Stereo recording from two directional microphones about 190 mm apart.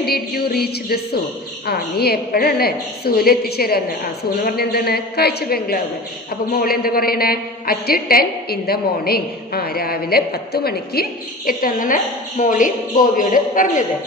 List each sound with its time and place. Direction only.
0.0 s a woman's voice: 55° left (ahead or behind)